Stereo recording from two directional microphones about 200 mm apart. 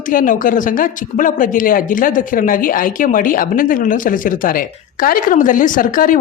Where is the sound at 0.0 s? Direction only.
40° left (ahead or behind).